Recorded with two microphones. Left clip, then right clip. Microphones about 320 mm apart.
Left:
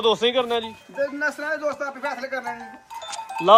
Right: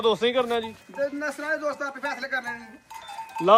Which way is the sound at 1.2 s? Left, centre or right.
Left.